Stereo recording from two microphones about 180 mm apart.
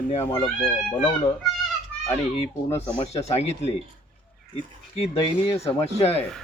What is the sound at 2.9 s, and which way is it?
Speech, 35° left (ahead or behind).